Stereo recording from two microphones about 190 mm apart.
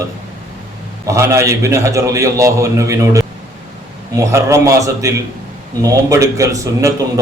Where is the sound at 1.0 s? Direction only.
15° right (ahead or behind).